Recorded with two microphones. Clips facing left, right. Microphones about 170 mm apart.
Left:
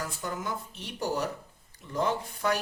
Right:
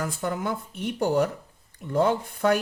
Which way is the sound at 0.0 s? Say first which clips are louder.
Right 6 dB; 55° right (ahead or behind).